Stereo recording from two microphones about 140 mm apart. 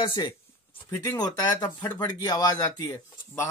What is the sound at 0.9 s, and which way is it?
Speech, 25° left (ahead or behind).